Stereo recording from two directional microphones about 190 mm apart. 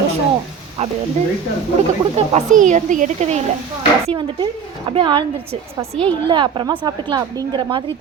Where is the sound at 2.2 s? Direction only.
40° right (ahead or behind).